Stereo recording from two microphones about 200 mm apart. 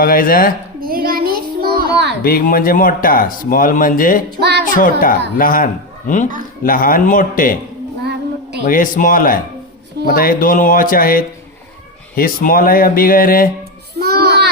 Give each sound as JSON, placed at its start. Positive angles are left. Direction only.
{"t": 0.0, "sound": "speech", "side_deg": 45}
{"t": 0.8, "sound": "a sound", "side_deg": -45}
{"t": 2.2, "sound": "speech", "side_deg": 45}
{"t": 4.4, "sound": "music", "side_deg": -55}
{"t": 4.8, "sound": "speech", "side_deg": 45}
{"t": 8.6, "sound": "speech", "side_deg": 40}
{"t": 14.0, "sound": "child singing", "side_deg": -50}